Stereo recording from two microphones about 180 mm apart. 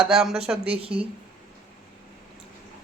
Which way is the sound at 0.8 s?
30° right (ahead or behind).